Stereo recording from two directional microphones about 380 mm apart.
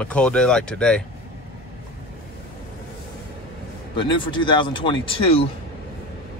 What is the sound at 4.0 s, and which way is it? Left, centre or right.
Speech, centre.